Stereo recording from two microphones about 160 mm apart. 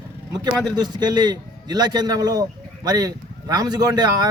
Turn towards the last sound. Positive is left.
turn(degrees=-25)  # may be behind; listen again after turning